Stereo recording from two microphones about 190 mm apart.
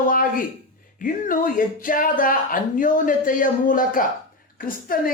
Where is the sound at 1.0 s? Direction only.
45° left (ahead or behind).